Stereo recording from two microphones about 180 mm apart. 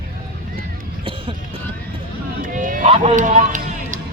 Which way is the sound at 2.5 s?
45° right (ahead or behind).